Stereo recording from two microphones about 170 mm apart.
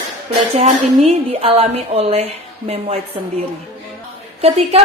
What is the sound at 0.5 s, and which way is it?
A woman's voice, 35° right (ahead or behind).